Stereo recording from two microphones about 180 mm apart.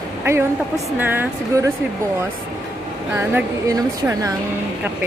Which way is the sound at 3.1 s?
15° right (ahead or behind).